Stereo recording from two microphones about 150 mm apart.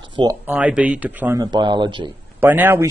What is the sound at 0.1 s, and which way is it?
Speech, 30° right (ahead or behind).